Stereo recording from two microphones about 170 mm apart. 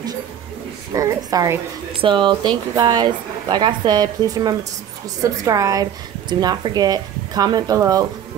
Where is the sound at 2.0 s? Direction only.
30° right (ahead or behind).